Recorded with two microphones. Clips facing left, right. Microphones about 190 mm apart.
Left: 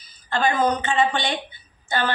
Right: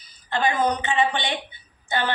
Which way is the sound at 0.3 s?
20° right (ahead or behind).